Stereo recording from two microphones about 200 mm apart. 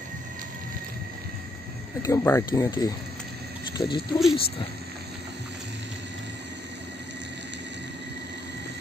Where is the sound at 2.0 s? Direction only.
15° left (ahead or behind).